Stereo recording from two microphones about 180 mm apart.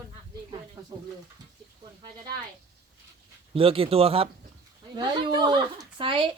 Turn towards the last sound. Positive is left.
turn(degrees=-30)  # may be behind; listen again after turning